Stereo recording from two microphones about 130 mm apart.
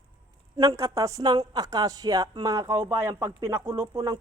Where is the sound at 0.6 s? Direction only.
25° right (ahead or behind).